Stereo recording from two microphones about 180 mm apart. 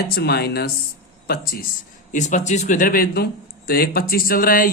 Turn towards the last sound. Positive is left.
turn(degrees=55)  # may be behind; listen again after turning